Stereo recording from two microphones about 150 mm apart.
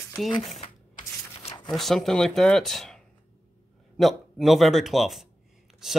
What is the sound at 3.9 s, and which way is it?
Speech, centre (ahead or behind).